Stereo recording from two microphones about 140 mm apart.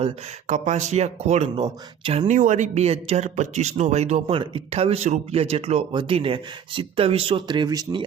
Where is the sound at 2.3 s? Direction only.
65° right (ahead or behind).